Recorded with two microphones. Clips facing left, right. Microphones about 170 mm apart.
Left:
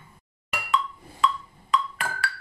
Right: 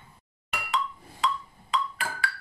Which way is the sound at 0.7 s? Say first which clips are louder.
Left 3 dB; 55° left (ahead or behind).